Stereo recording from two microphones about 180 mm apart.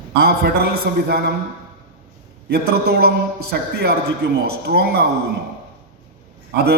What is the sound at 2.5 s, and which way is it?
A man's voice, 60° right (ahead or behind).